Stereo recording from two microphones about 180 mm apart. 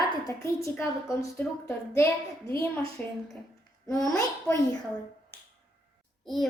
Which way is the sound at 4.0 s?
20° left (ahead or behind).